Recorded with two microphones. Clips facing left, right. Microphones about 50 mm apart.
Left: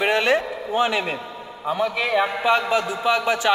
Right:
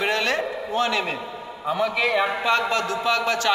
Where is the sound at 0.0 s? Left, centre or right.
Centre.